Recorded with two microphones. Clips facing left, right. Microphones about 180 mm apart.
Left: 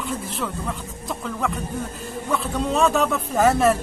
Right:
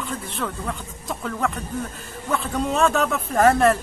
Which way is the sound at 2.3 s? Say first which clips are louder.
Even; centre (ahead or behind).